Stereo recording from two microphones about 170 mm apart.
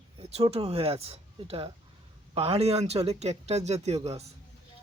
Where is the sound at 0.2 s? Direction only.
35° right (ahead or behind).